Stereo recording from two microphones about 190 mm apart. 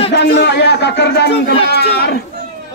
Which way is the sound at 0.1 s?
65° left (ahead or behind).